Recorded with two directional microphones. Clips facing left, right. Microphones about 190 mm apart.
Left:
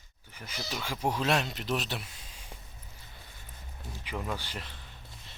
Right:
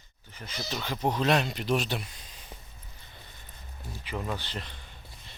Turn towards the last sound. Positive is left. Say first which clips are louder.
# right 3 dB
turn(degrees=5)  # may be behind; listen again after turning